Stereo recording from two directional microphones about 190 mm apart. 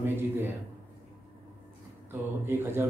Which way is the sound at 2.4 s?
10° right (ahead or behind).